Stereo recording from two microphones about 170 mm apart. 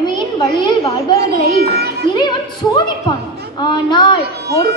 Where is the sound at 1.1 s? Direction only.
70° right (ahead or behind).